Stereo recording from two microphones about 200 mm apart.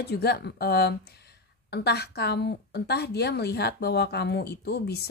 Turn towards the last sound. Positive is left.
turn(degrees=55)  # may be behind; listen again after turning